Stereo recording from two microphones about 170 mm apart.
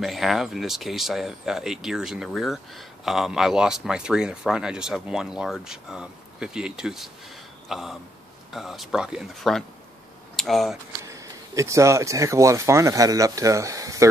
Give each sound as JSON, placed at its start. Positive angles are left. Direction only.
{"t": 0.0, "sound": "speech", "side_deg": 0}
{"t": 11.1, "sound": "speech", "side_deg": -20}